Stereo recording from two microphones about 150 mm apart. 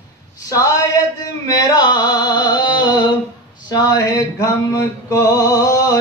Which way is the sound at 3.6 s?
25° left (ahead or behind).